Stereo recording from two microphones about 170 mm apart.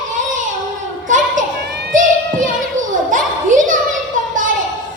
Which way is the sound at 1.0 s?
50° right (ahead or behind).